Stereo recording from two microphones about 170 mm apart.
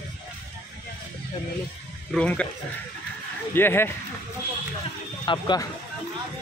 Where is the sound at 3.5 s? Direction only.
15° left (ahead or behind).